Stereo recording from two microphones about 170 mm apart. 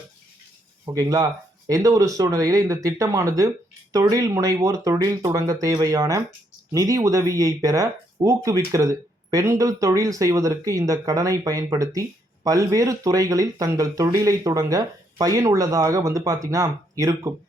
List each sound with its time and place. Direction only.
0.9 s speech: 20° right (ahead or behind)